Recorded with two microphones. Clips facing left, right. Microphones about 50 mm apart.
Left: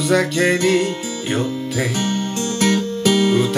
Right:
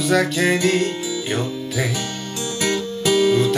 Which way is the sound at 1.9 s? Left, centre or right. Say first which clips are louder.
Left 6 dB; left.